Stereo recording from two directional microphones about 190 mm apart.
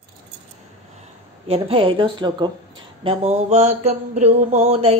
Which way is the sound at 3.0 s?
35° right (ahead or behind).